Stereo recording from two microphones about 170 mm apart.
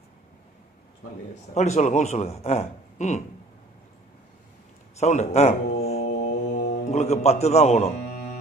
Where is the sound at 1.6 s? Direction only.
40° left (ahead or behind).